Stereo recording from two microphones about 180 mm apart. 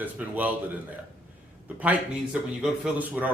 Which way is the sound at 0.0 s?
10° right (ahead or behind).